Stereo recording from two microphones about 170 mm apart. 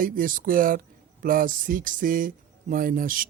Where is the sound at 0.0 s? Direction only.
55° right (ahead or behind).